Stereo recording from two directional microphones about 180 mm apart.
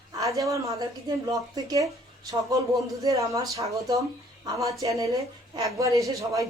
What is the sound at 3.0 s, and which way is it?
A woman's voice, 20° right (ahead or behind).